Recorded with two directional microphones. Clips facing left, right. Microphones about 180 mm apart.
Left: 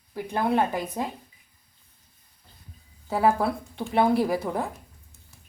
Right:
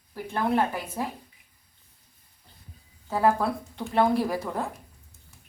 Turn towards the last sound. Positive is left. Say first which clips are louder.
# left 3 dB
turn(degrees=10)  # may be behind; listen again after turning